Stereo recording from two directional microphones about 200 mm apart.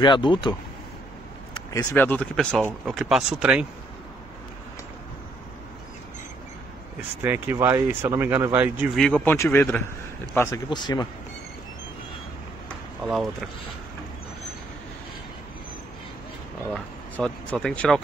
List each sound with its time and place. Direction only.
0.0 s speech: 25° left (ahead or behind)
1.7 s speech: 15° left (ahead or behind); by 3.6 s 5° right (ahead or behind)
7.2 s speech: 10° right (ahead or behind); by 10.6 s 10° left (ahead or behind)
10.7 s speech: 20° left (ahead or behind)
13.0 s speech: centre (ahead or behind)
16.7 s speech: centre (ahead or behind)